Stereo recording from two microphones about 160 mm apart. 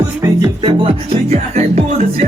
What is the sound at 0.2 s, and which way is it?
Music, 25° right (ahead or behind).